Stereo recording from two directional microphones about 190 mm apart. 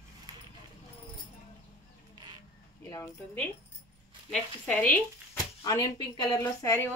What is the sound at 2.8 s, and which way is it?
Speech, 10° left (ahead or behind).